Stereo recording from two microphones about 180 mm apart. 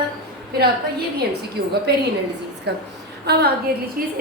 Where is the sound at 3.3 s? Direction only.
65° right (ahead or behind).